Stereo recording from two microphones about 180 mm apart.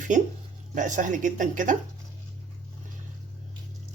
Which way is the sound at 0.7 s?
45° right (ahead or behind).